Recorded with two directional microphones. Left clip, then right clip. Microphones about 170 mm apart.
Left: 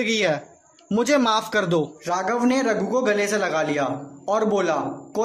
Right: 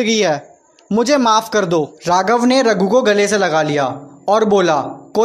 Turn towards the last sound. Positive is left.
turn(degrees=-35)  # may be behind; listen again after turning